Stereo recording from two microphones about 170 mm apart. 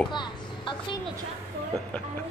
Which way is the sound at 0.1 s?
25° left (ahead or behind).